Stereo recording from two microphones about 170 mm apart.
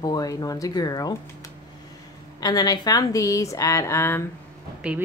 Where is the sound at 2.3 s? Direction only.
20° left (ahead or behind).